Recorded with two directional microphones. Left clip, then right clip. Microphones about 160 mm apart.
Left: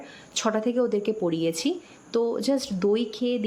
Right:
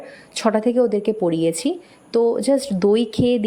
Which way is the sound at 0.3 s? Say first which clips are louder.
Right 7 dB; 25° right (ahead or behind).